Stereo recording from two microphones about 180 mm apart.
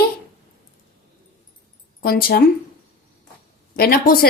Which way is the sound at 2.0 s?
55° left (ahead or behind).